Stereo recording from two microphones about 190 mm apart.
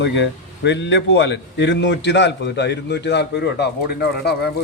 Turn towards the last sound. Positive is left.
turn(degrees=60)  # may be behind; listen again after turning